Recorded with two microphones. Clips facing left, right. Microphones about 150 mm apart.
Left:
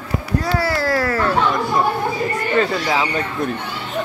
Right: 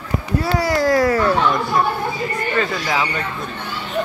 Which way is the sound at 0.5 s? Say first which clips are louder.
Right 4 dB; 15° right (ahead or behind).